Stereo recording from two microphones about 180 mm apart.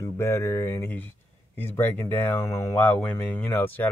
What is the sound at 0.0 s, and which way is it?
Speech, 15° left (ahead or behind).